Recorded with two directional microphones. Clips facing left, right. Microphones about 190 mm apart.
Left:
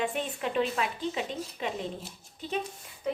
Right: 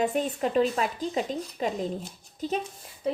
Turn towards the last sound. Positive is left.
turn(degrees=-35)  # may be behind; listen again after turning